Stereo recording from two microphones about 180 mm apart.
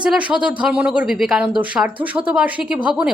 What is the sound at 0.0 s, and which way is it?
Speech, 5° right (ahead or behind).